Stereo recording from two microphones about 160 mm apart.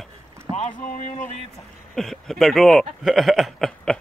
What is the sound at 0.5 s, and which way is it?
Boat, 50° left (ahead or behind).